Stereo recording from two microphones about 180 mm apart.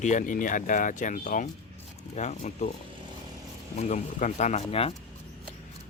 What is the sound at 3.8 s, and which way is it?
Speech, 40° left (ahead or behind).